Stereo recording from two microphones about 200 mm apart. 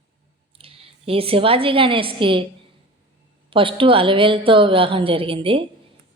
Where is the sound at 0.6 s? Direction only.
30° right (ahead or behind).